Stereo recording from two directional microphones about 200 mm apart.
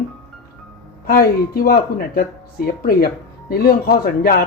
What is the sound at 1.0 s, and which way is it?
Speech, 50° left (ahead or behind).